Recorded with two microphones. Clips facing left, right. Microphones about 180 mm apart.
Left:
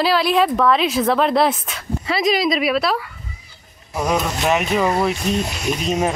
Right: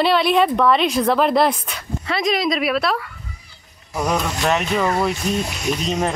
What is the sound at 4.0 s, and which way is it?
A woman's voice, 5° left (ahead or behind).